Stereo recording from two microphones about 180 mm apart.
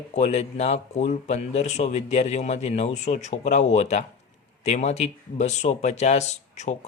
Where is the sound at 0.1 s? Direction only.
40° left (ahead or behind).